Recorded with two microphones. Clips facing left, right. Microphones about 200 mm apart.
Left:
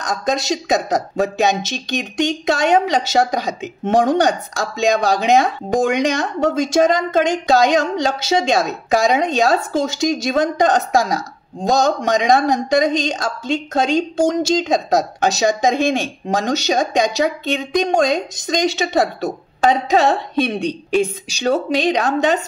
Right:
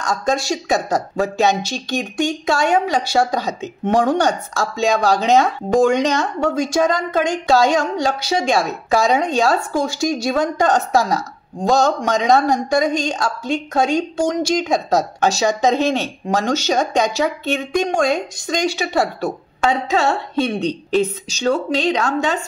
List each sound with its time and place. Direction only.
0.0 s speech: 20° left (ahead or behind)